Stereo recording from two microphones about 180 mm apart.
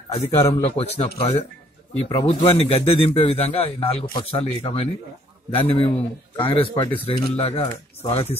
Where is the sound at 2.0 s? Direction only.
30° left (ahead or behind).